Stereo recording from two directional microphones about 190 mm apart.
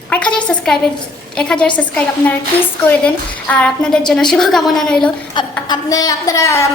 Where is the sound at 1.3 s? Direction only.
5° left (ahead or behind).